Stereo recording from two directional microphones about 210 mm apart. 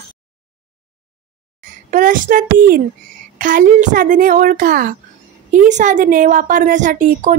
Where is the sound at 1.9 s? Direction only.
40° right (ahead or behind).